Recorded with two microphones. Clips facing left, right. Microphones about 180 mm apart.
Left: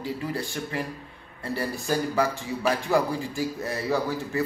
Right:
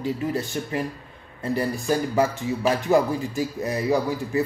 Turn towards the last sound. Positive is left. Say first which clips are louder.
# right 3 dB
turn(degrees=-20)  # may be behind; listen again after turning